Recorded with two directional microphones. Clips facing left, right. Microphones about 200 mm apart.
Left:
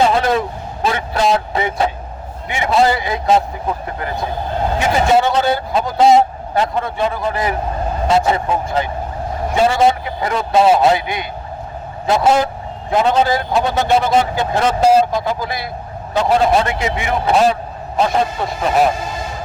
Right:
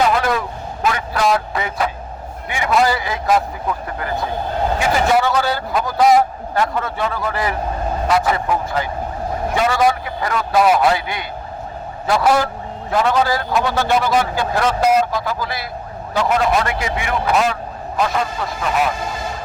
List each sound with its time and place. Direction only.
0.0 s vehicle: 25° left (ahead or behind)
2.5 s a man's voice: 25° left (ahead or behind)
5.1 s a man's voice: 25° left (ahead or behind)